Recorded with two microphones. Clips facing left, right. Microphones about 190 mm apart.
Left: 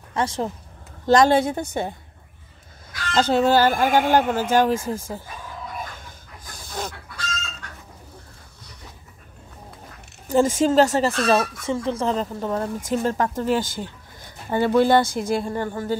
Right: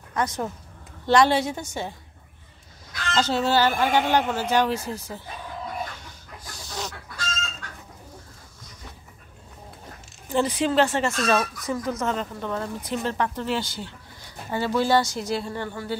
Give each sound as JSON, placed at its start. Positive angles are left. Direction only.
{"t": 0.1, "sound": "speech", "side_deg": 30}
{"t": 1.0, "sound": "speech", "side_deg": 45}
{"t": 3.2, "sound": "speech", "side_deg": 50}
{"t": 6.7, "sound": "chicken", "side_deg": 50}
{"t": 10.2, "sound": "speech", "side_deg": 45}